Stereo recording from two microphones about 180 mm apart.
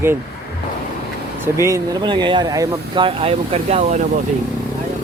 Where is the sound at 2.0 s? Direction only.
25° right (ahead or behind).